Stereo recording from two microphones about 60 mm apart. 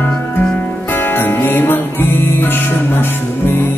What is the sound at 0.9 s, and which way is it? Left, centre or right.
Music, left.